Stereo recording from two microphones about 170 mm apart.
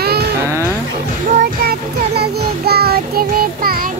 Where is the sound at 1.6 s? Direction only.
70° right (ahead or behind).